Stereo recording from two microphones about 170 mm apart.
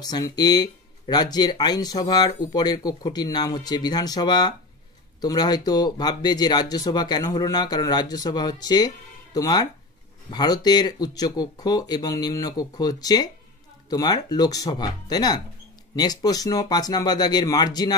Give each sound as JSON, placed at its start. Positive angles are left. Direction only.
{"t": 0.0, "sound": "speech", "side_deg": 25}